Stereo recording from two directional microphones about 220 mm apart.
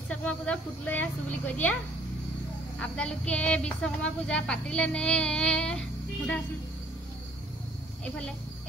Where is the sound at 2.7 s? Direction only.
5° left (ahead or behind).